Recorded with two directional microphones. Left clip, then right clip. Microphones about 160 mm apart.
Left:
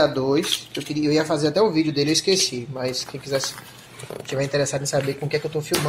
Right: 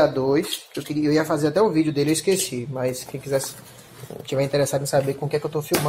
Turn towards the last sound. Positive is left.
turn(degrees=-10)  # may be behind; listen again after turning